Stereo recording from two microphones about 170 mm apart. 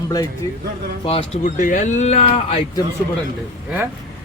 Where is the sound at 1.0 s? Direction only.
35° left (ahead or behind).